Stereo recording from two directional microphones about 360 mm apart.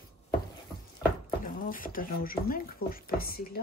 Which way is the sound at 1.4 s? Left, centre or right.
Left.